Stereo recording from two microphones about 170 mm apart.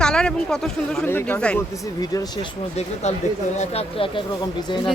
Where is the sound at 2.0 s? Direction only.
25° left (ahead or behind).